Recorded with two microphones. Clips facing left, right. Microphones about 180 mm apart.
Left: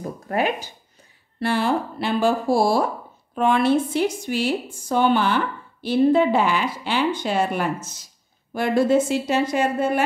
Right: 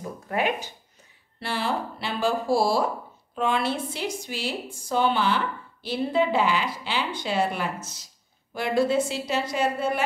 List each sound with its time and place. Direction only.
0.3 s speech: 40° left (ahead or behind)
1.4 s a woman's voice: 50° left (ahead or behind)